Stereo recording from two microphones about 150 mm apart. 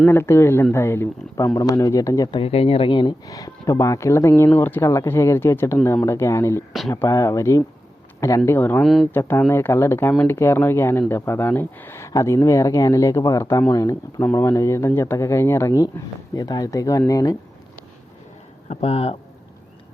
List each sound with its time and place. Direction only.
0.0 s speech: 15° left (ahead or behind)
2.4 s speech: 40° left (ahead or behind); by 8.8 s 15° left (ahead or behind)
8.8 s speech: centre (ahead or behind)
9.1 s speech: 15° left (ahead or behind)
18.7 s speech: 40° left (ahead or behind)